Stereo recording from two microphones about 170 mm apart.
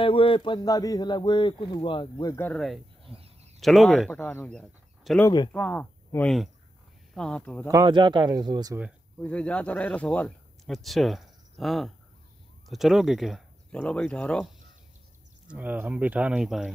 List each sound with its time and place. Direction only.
0.0 s speech: 30° left (ahead or behind)
2.3 s speech: 10° left (ahead or behind)
3.1 s a sound: 35° right (ahead or behind)
3.6 s speech: centre (ahead or behind)
7.6 s speech: 20° right (ahead or behind)
9.2 s speech: 5° left (ahead or behind)
15.4 s speech: 10° right (ahead or behind)